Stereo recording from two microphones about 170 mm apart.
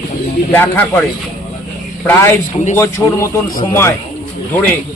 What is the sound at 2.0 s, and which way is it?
A man's voice, 15° left (ahead or behind).